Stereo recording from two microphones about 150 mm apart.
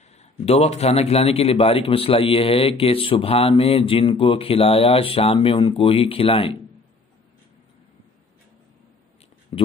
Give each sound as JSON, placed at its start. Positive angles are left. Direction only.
{"t": 0.1, "sound": "a man's voice", "side_deg": 45}
{"t": 9.5, "sound": "speech", "side_deg": 40}